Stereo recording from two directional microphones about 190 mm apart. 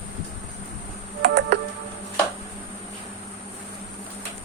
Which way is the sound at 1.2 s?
75° right (ahead or behind).